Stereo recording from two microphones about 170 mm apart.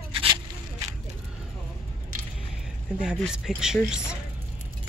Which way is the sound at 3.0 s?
5° right (ahead or behind).